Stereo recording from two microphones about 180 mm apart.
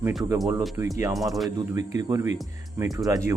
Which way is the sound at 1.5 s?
20° right (ahead or behind).